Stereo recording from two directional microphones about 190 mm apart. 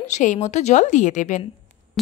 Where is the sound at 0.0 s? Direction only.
40° left (ahead or behind).